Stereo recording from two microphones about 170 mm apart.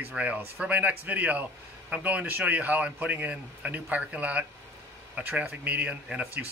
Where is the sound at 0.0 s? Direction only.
10° right (ahead or behind).